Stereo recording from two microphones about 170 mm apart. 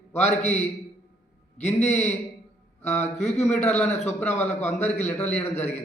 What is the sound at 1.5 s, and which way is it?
A man's voice, 40° left (ahead or behind).